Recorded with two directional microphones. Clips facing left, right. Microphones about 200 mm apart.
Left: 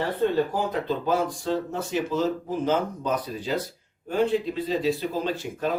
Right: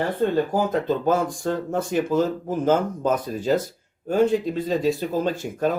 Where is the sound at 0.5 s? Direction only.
45° right (ahead or behind).